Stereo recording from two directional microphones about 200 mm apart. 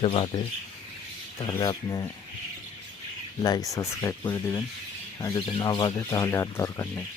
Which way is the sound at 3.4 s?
20° left (ahead or behind).